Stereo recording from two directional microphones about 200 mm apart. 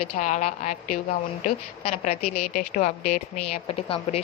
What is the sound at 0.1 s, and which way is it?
A woman's voice, 35° left (ahead or behind).